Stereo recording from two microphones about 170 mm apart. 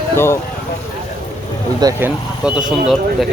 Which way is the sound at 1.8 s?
15° right (ahead or behind).